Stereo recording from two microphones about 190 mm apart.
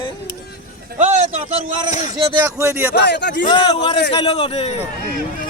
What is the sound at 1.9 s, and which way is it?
Speech, 40° left (ahead or behind).